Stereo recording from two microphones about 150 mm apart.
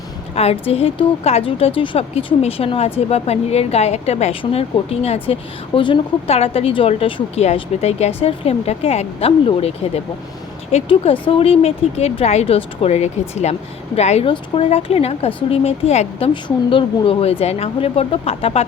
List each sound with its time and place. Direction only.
0.3 s a woman's voice: 45° left (ahead or behind)
16.3 s a woman's voice: 35° left (ahead or behind)